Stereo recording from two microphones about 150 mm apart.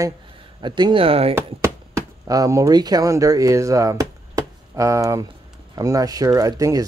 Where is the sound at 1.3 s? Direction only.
20° right (ahead or behind).